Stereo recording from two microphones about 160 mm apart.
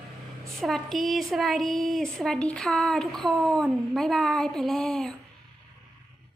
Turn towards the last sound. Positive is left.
turn(degrees=0)  # may be behind; listen again after turning